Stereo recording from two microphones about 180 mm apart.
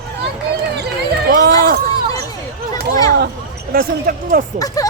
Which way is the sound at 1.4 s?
55° right (ahead or behind).